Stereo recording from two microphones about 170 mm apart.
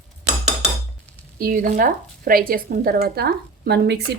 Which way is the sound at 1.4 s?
55° right (ahead or behind).